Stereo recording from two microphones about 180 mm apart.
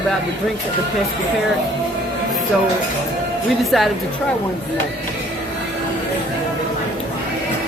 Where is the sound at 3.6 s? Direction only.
Centre (ahead or behind).